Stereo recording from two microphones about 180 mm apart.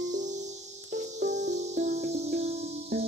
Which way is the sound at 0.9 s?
65° right (ahead or behind).